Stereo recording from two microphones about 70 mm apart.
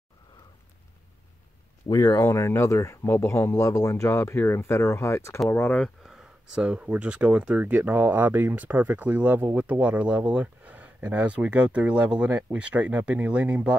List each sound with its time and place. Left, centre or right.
1.9 s speech: left
2.2 s speech: left
5.5 s speech: left
6.0 s speech: centre